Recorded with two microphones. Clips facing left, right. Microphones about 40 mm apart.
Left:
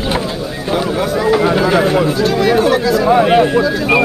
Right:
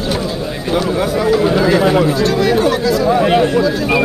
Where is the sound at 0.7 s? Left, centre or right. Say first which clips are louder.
Even; centre.